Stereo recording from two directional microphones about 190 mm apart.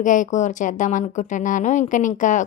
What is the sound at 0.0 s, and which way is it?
A woman's voice, 45° left (ahead or behind).